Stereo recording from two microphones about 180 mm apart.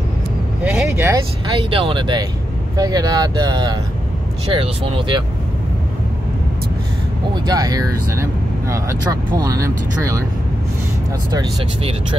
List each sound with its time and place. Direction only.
0.7 s speech: 10° right (ahead or behind)
1.5 s speech: 30° right (ahead or behind)
7.4 s speech: 20° right (ahead or behind)
11.3 s speech: 30° right (ahead or behind)